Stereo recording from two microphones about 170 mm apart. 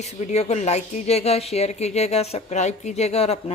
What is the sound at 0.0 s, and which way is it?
Speech, 40° left (ahead or behind).